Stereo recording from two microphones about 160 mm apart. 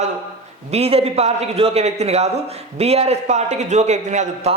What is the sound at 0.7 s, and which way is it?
A man's voice, 40° right (ahead or behind).